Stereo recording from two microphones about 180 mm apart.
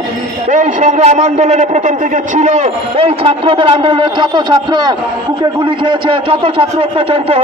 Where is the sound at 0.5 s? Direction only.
45° right (ahead or behind).